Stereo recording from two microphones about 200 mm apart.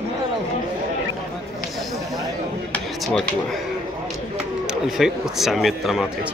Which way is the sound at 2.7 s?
Centre (ahead or behind).